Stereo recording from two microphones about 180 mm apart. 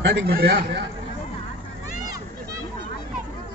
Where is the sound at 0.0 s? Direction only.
70° right (ahead or behind).